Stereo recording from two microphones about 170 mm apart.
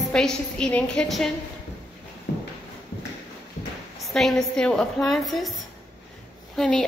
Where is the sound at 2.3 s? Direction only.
70° left (ahead or behind).